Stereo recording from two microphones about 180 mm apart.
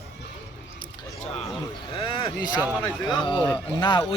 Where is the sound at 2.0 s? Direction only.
25° left (ahead or behind).